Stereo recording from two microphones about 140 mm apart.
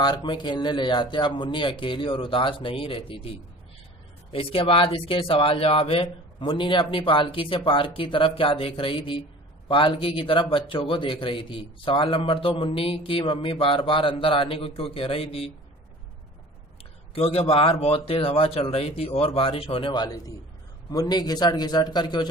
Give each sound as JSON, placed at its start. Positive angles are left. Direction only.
{"t": 0.0, "sound": "speech", "side_deg": 30}
{"t": 17.1, "sound": "a man's voice", "side_deg": 45}